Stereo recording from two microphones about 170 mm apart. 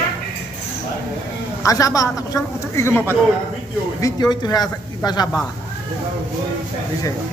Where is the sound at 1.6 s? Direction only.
20° left (ahead or behind).